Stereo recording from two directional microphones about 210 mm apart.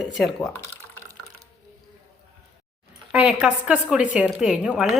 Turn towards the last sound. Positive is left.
turn(degrees=-5)  # may be behind; listen again after turning